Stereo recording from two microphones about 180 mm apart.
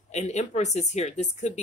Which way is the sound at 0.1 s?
40° left (ahead or behind).